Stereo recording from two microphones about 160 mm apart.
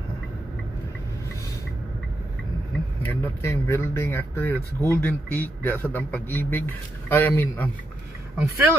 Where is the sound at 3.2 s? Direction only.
15° left (ahead or behind).